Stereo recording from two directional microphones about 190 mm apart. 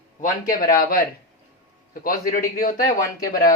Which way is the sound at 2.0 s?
50° left (ahead or behind).